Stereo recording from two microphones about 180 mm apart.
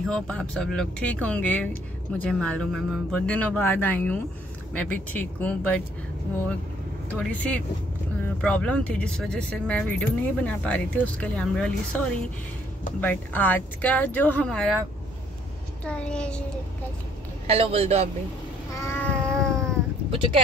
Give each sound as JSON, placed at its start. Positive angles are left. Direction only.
{"t": 0.0, "sound": "speech", "side_deg": 5}
{"t": 7.2, "sound": "speech", "side_deg": 5}
{"t": 15.8, "sound": "a child's voice", "side_deg": 5}
{"t": 17.5, "sound": "a man's voice", "side_deg": -35}
{"t": 18.9, "sound": "cat", "side_deg": 10}
{"t": 20.1, "sound": "a sound", "side_deg": -30}